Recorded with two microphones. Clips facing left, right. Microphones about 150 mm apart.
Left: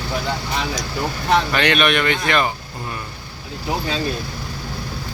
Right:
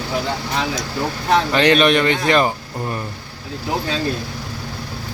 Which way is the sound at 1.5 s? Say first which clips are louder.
Right 4 dB; 30° right (ahead or behind).